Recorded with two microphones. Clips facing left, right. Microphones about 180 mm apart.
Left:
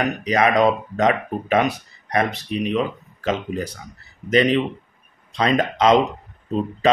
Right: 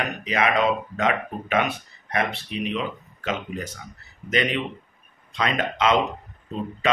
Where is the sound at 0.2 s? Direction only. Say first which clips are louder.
Left 5 dB; 40° left (ahead or behind).